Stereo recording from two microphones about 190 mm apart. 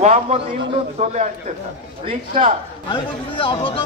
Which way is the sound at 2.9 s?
25° left (ahead or behind).